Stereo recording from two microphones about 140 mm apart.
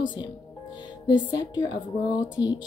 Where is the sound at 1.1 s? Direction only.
35° left (ahead or behind).